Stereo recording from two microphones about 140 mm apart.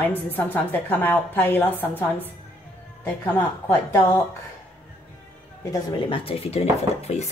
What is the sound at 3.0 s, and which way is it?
Speech, 15° left (ahead or behind).